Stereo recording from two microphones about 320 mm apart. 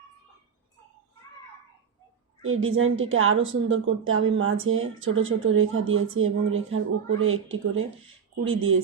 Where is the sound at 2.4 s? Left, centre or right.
Right.